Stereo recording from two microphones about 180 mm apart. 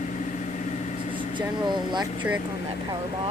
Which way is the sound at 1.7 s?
25° right (ahead or behind).